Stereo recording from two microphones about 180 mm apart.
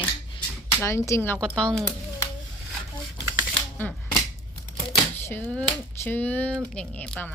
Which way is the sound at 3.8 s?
10° left (ahead or behind).